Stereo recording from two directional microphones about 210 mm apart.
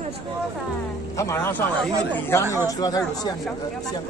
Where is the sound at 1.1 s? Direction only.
15° left (ahead or behind).